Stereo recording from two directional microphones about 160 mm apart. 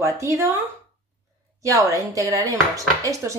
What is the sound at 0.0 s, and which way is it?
Speech, 20° right (ahead or behind).